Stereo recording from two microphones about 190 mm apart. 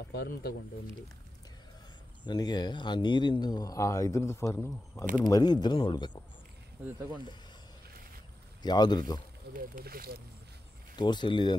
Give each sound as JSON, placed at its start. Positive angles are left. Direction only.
{"t": 0.1, "sound": "speech", "side_deg": 55}
{"t": 2.2, "sound": "speech", "side_deg": 20}
{"t": 8.6, "sound": "speech", "side_deg": 20}
{"t": 9.5, "sound": "speech", "side_deg": -50}
{"t": 11.0, "sound": "speech", "side_deg": 25}